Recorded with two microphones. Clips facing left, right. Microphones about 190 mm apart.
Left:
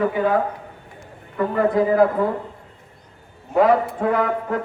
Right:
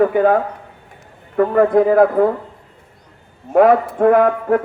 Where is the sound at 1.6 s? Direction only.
55° right (ahead or behind).